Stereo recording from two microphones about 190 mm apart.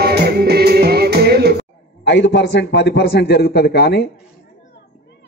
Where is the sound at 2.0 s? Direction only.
65° left (ahead or behind).